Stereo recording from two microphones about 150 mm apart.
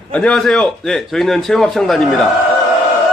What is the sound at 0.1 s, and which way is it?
A man's voice, 5° left (ahead or behind).